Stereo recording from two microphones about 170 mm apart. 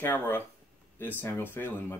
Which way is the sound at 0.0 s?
10° left (ahead or behind).